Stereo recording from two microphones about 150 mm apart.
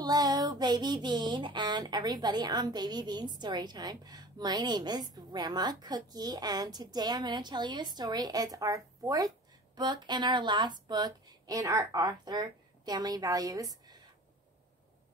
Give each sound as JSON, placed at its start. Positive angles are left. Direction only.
{"t": 0.0, "sound": "child singing", "side_deg": -25}